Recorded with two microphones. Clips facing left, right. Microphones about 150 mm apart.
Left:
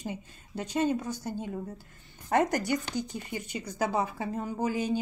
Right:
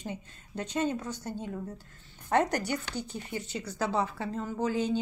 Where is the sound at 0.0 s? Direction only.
10° left (ahead or behind).